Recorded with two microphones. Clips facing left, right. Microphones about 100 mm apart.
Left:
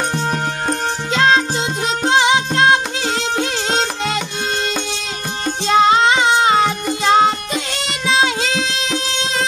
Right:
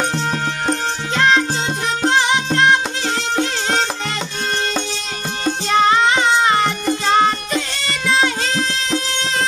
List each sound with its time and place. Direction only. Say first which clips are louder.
0.1 s music: left 1 dB; 15° left (ahead or behind)
5.7 s music: left 2 dB; 20° left (ahead or behind)